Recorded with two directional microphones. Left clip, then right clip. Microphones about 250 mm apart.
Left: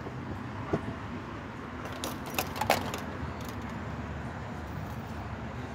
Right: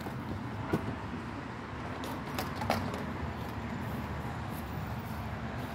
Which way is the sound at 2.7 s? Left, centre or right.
Left.